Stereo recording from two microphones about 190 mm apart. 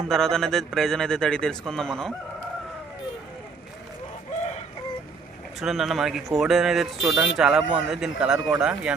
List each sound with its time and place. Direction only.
0.1 s a man's voice: centre (ahead or behind)
5.5 s a man's voice: centre (ahead or behind)